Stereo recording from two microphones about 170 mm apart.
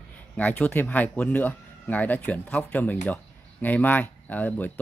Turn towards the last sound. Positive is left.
turn(degrees=10)  # may be behind; listen again after turning